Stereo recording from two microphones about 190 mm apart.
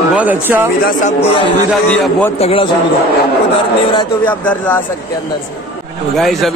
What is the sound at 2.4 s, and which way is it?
Speech, 30° left (ahead or behind).